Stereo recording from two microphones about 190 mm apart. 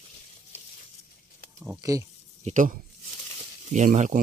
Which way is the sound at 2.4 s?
40° right (ahead or behind).